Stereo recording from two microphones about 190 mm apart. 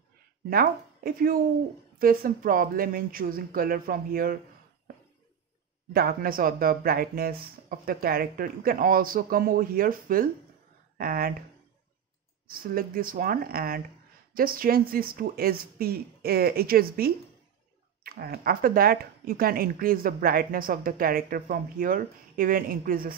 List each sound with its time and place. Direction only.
0.5 s speech: 50° right (ahead or behind)
5.9 s speech: 50° right (ahead or behind)
12.4 s speech: 50° right (ahead or behind)